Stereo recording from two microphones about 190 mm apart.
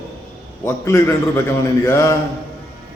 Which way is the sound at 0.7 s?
15° left (ahead or behind).